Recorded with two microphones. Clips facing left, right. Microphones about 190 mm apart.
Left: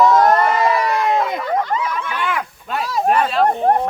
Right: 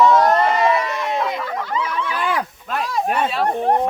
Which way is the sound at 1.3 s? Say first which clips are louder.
Left 4 dB; 50° left (ahead or behind).